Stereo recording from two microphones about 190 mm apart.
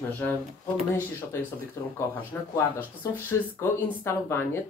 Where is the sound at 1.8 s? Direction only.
15° left (ahead or behind).